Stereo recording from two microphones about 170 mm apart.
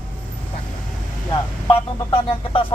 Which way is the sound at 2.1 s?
30° left (ahead or behind).